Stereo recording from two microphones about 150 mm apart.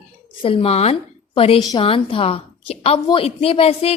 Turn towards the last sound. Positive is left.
turn(degrees=40)  # may be behind; listen again after turning